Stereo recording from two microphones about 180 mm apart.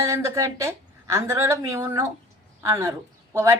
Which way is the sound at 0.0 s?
15° right (ahead or behind).